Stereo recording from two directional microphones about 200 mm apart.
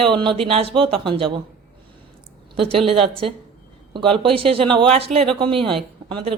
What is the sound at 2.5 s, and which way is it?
Speech, 30° right (ahead or behind).